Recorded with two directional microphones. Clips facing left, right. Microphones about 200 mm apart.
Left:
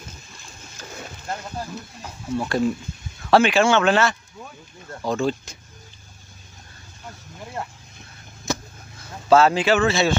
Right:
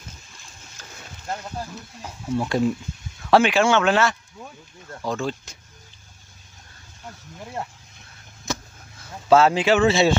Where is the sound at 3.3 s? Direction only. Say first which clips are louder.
Left 1 dB; 15° right (ahead or behind).